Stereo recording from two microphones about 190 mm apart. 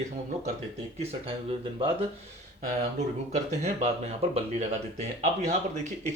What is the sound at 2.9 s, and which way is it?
Speech, 35° right (ahead or behind).